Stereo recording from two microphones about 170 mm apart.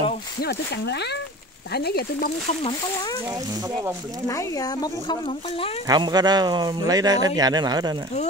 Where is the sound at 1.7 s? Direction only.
70° left (ahead or behind).